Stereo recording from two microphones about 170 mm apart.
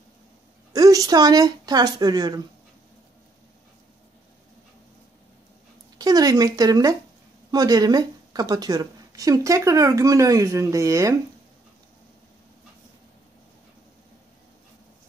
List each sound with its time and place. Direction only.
0.7 s speech: 20° right (ahead or behind)
5.9 s a woman's voice: 20° right (ahead or behind)